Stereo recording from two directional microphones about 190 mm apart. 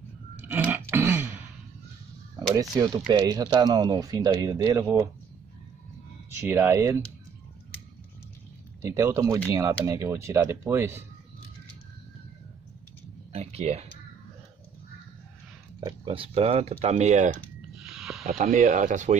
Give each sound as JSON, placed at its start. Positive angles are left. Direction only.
{"t": 0.4, "sound": "a sound", "side_deg": -10}
{"t": 3.1, "sound": "speech", "side_deg": -20}
{"t": 6.4, "sound": "speech", "side_deg": -15}
{"t": 8.8, "sound": "speech", "side_deg": -15}
{"t": 13.3, "sound": "a sound", "side_deg": -35}
{"t": 15.8, "sound": "speech", "side_deg": -30}
{"t": 17.9, "sound": "snake", "side_deg": 0}
{"t": 18.2, "sound": "speech", "side_deg": -40}